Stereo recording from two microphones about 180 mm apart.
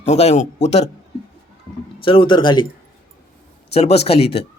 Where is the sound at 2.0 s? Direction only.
30° left (ahead or behind).